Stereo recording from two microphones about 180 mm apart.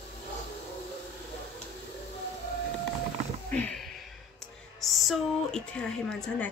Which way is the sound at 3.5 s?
10° left (ahead or behind).